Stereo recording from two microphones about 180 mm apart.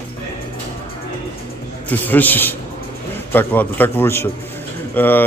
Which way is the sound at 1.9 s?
10° left (ahead or behind).